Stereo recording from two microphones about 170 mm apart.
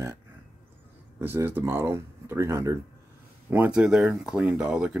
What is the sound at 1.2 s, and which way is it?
Speech, 10° right (ahead or behind).